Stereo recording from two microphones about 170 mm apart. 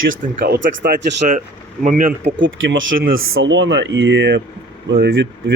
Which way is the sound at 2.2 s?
90° right.